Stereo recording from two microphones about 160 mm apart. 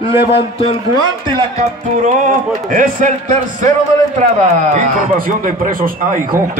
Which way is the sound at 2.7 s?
55° right (ahead or behind).